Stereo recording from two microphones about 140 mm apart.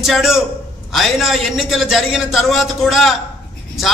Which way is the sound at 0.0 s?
Centre (ahead or behind).